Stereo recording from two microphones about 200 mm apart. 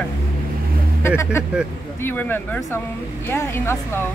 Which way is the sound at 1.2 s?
15° left (ahead or behind).